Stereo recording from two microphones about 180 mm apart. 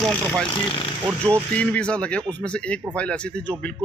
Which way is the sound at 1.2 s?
5° left (ahead or behind).